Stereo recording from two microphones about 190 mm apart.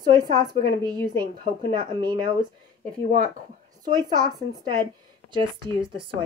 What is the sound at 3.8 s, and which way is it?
A woman's voice, 20° right (ahead or behind).